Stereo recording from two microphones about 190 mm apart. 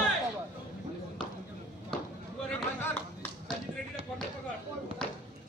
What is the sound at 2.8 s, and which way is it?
Music, 10° left (ahead or behind).